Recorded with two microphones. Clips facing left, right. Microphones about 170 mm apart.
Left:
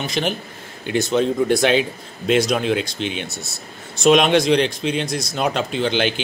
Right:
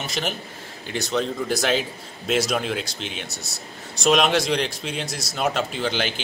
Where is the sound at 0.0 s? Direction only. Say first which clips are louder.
Left 5 dB; centre (ahead or behind).